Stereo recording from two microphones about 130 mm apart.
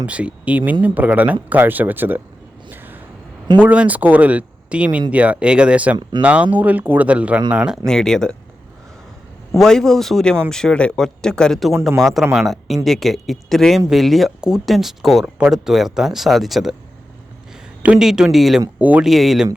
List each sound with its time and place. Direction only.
0.0 s speech: 10° right (ahead or behind)
2.6 s a sound: 15° right (ahead or behind)
3.6 s speech: 10° right (ahead or behind)
6.0 s speech: 35° right (ahead or behind)
6.2 s speech: 10° right (ahead or behind)
7.9 s speech: 5° left (ahead or behind)
9.6 s speech: 5° left (ahead or behind)
17.8 s speech: 5° right (ahead or behind)
19.0 s speech: centre (ahead or behind)